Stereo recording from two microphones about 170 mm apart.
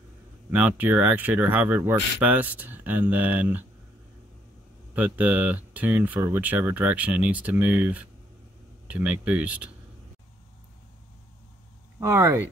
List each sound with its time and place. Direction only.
0.5 s speech: 10° right (ahead or behind)
4.9 s speech: 10° right (ahead or behind)
12.0 s speech: 20° right (ahead or behind)